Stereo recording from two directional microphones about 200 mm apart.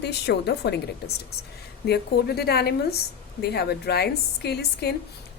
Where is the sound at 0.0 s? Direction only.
55° left (ahead or behind).